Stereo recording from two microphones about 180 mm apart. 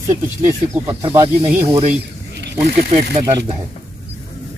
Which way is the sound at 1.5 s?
10° right (ahead or behind).